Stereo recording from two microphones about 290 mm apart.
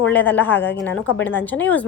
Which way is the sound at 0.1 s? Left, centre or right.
Centre.